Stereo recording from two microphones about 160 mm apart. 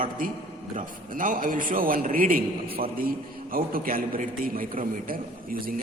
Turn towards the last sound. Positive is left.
turn(degrees=-60)  # may be behind; listen again after turning